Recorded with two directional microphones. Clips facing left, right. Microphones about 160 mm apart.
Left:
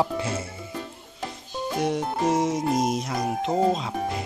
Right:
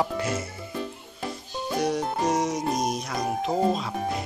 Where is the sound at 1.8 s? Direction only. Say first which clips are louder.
Even; 25° left (ahead or behind).